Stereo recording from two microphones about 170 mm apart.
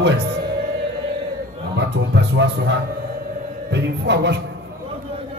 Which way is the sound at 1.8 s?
85° right.